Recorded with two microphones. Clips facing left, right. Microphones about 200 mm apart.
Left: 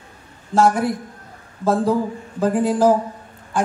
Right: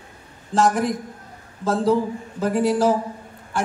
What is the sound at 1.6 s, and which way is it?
Speech, 15° left (ahead or behind).